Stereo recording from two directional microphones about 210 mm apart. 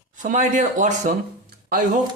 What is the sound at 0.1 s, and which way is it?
Speech, 40° right (ahead or behind).